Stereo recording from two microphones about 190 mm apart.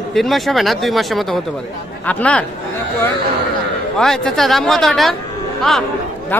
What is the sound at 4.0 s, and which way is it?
Speech, centre (ahead or behind).